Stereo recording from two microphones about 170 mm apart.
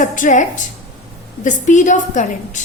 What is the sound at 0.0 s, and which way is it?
A woman's voice, 50° left (ahead or behind).